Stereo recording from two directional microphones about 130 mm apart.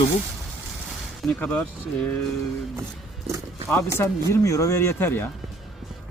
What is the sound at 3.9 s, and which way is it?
Speech, 20° left (ahead or behind).